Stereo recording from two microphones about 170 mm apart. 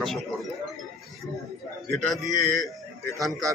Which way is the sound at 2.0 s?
Centre (ahead or behind).